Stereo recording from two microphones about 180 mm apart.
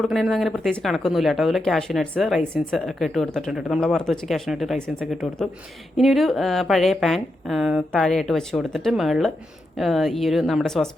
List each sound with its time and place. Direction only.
0.0 s speech: centre (ahead or behind)